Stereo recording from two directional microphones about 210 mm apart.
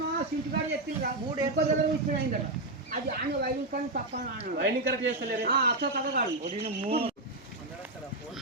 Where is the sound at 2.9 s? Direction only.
45° right (ahead or behind).